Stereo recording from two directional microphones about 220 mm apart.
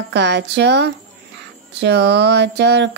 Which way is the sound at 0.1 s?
50° right (ahead or behind).